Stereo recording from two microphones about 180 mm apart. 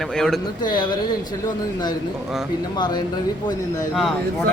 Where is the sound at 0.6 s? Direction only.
25° left (ahead or behind).